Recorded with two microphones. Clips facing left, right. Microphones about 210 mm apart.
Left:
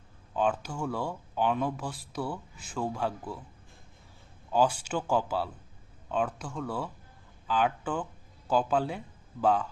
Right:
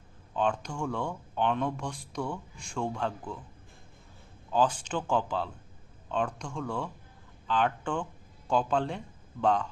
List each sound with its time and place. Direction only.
0.3 s speech: 5° left (ahead or behind)
4.5 s speech: 10° left (ahead or behind)